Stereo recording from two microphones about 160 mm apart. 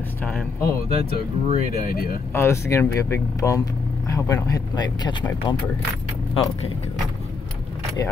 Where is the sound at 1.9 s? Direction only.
65° left (ahead or behind).